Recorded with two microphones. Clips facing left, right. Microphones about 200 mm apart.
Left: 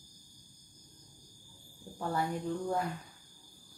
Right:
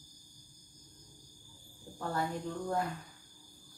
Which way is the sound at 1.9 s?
15° left (ahead or behind).